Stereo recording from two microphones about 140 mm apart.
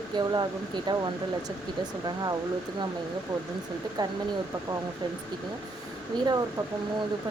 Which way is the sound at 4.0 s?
30° right (ahead or behind).